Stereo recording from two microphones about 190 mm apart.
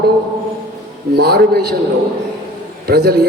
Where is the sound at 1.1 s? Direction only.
55° right (ahead or behind).